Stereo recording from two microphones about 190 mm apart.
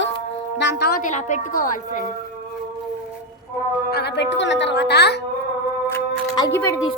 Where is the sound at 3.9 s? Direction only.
60° left (ahead or behind).